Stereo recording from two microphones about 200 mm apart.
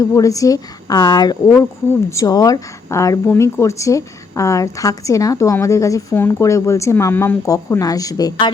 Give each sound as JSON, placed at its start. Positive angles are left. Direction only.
{"t": 0.0, "sound": "speech", "side_deg": 15}